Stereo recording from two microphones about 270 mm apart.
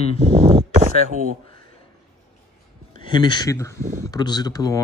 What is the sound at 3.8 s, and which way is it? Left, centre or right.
Speech, right.